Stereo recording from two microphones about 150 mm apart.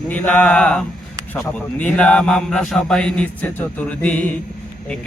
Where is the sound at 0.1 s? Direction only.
10° left (ahead or behind).